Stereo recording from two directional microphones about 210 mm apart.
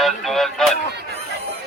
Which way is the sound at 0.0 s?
Centre (ahead or behind).